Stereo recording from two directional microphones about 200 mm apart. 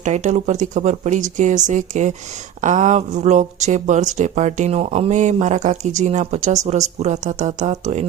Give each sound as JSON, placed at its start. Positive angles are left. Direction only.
{"t": 0.0, "sound": "speech", "side_deg": -35}